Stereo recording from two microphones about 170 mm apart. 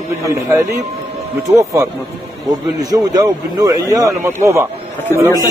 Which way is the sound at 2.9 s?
20° right (ahead or behind).